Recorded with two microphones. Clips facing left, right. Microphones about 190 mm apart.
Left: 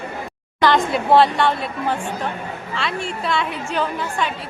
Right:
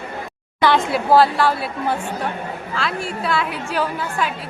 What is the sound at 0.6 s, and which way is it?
A woman's voice, 5° right (ahead or behind).